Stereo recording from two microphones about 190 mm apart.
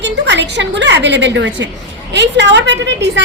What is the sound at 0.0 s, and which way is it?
A woman's voice, 65° right (ahead or behind).